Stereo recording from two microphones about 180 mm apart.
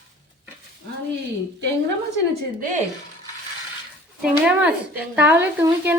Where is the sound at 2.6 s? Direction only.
45° right (ahead or behind).